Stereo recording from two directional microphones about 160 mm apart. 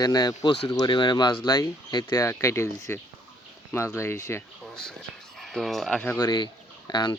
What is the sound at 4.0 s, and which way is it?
Speech, 15° left (ahead or behind).